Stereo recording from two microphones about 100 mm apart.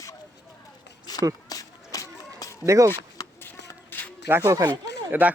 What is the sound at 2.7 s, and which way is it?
Speech, 30° right (ahead or behind).